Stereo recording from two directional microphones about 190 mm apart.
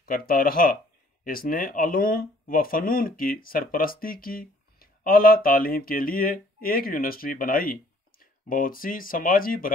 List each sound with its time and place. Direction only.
0.0 s speech: 50° left (ahead or behind)